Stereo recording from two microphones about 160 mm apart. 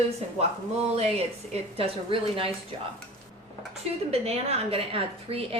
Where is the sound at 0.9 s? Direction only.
40° right (ahead or behind).